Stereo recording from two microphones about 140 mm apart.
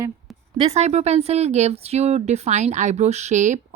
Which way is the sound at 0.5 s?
50° right (ahead or behind).